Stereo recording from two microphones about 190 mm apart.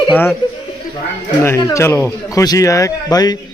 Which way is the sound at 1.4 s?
15° left (ahead or behind).